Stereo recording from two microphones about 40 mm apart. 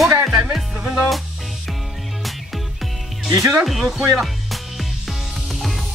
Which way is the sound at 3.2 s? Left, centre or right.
Centre.